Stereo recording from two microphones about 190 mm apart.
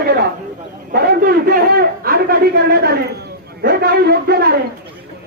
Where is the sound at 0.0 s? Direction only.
55° right (ahead or behind).